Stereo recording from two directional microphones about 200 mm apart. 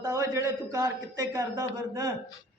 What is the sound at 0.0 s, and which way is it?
A man's voice, 15° right (ahead or behind).